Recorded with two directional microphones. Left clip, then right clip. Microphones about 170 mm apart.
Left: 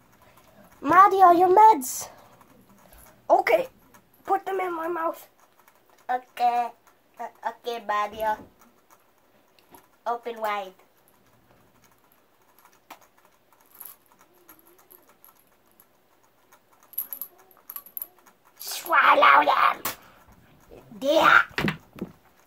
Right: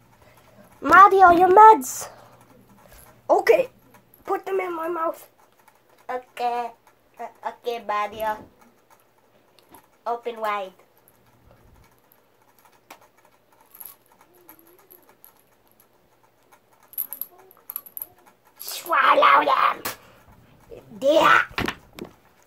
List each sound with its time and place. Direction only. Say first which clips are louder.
0.8 s a woman's voice: right 3 dB; centre (ahead or behind)
3.3 s a child's voice: right 2 dB; 30° right (ahead or behind)
6.4 s a child's voice: left 2 dB; 25° right (ahead or behind)
10.0 s a child's voice: right 2 dB; 20° right (ahead or behind)
16.9 s a sound: right 2 dB; centre (ahead or behind)
18.7 s speech: even; 15° right (ahead or behind)
21.0 s speech: right 2 dB; 30° right (ahead or behind)